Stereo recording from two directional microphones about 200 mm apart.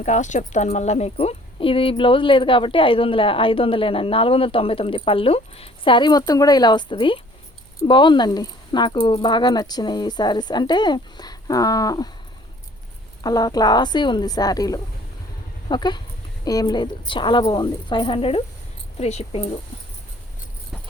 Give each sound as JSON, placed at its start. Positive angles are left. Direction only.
{"t": 0.0, "sound": "speech", "side_deg": 35}
{"t": 13.2, "sound": "speech", "side_deg": 20}